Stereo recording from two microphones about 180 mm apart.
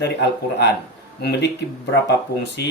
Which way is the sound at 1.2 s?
65° left (ahead or behind).